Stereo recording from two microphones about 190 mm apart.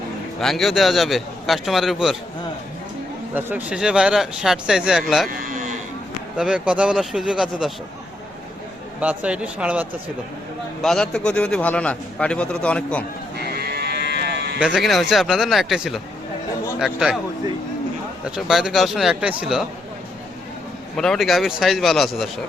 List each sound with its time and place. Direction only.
0.3 s a man's voice: centre (ahead or behind)
3.3 s a man's voice: 5° right (ahead or behind)
6.3 s a man's voice: 5° right (ahead or behind)
9.0 s speech: 5° right (ahead or behind)
10.8 s a man's voice: centre (ahead or behind)
13.6 s sheep: 60° right (ahead or behind)
14.6 s a man's voice: centre (ahead or behind)
18.3 s a man's voice: 5° right (ahead or behind)
20.9 s a man's voice: 5° left (ahead or behind)